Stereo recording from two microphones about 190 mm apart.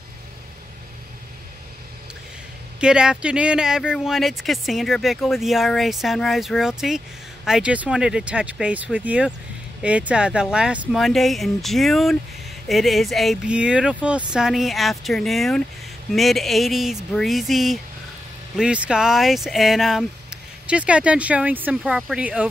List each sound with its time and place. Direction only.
2.8 s speech: 5° right (ahead or behind)